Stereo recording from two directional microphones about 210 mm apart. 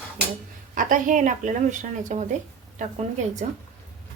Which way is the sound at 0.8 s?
40° right (ahead or behind).